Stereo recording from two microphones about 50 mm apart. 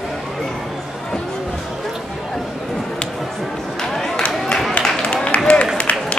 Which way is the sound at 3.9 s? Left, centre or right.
Centre.